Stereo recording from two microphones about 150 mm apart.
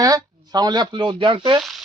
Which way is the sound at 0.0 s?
25° right (ahead or behind).